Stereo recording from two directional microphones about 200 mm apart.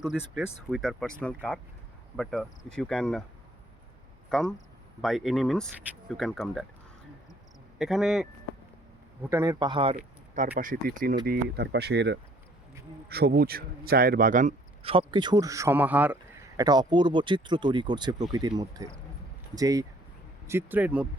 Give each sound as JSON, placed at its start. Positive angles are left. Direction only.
{"t": 0.0, "sound": "speech", "side_deg": 0}
{"t": 4.3, "sound": "speech", "side_deg": 0}
{"t": 7.8, "sound": "speech", "side_deg": 0}
{"t": 9.3, "sound": "speech", "side_deg": -15}
{"t": 16.6, "sound": "speech", "side_deg": -20}